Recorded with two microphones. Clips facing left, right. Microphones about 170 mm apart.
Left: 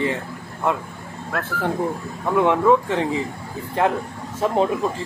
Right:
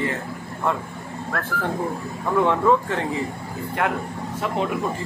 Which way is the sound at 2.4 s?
15° left (ahead or behind).